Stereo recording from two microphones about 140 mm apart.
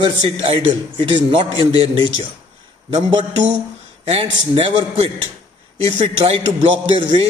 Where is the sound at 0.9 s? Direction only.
35° right (ahead or behind).